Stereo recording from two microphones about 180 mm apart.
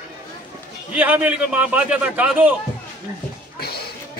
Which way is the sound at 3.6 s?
60° left (ahead or behind).